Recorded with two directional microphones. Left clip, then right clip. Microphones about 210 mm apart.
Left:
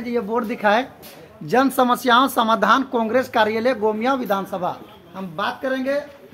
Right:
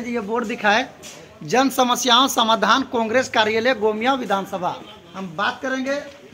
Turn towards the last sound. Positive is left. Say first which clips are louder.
# even
turn(degrees=25)  # may be behind; listen again after turning